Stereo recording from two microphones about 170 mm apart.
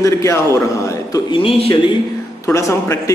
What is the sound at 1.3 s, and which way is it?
Speech, 30° left (ahead or behind).